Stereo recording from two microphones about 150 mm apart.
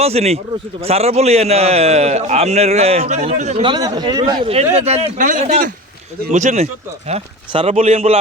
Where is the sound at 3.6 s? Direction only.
30° right (ahead or behind).